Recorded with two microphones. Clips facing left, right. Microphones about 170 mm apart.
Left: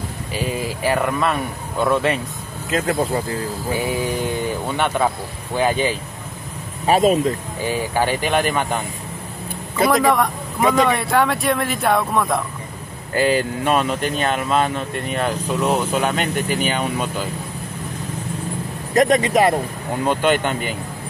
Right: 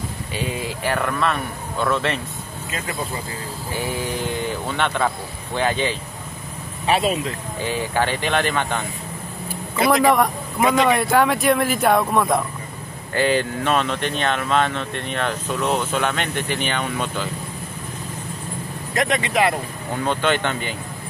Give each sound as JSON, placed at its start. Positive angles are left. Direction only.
{"t": 0.8, "sound": "speech", "side_deg": 10}
{"t": 2.9, "sound": "speech", "side_deg": 55}
{"t": 4.6, "sound": "speech", "side_deg": 10}
{"t": 6.9, "sound": "speech", "side_deg": 45}
{"t": 7.6, "sound": "speech", "side_deg": 10}
{"t": 9.8, "sound": "speech", "side_deg": 0}
{"t": 18.9, "sound": "speech", "side_deg": 40}
{"t": 20.1, "sound": "speech", "side_deg": 10}